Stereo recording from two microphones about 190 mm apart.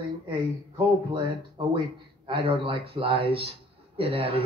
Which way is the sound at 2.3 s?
25° right (ahead or behind).